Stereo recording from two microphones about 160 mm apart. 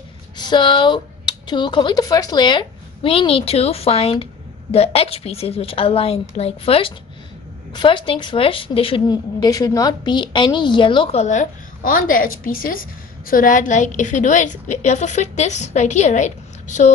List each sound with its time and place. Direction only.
0.4 s speech: 30° left (ahead or behind)
11.1 s a woman's voice: 50° left (ahead or behind)